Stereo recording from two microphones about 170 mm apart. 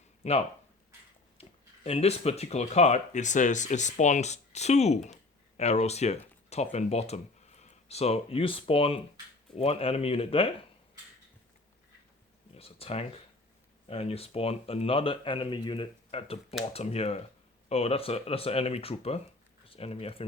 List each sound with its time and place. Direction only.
0.2 s speech: 40° left (ahead or behind)
12.5 s speech: 35° left (ahead or behind)